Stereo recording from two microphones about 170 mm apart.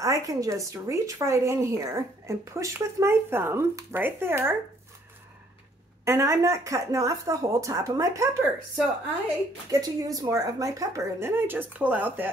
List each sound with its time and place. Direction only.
0.0 s speech: 20° right (ahead or behind)
6.0 s speech: 20° right (ahead or behind)
9.7 s a woman's voice: 20° right (ahead or behind)